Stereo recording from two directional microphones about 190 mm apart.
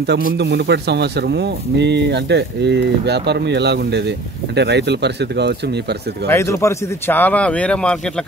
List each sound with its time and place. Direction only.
0.0 s speech: 60° right (ahead or behind)
6.2 s speech: 15° left (ahead or behind)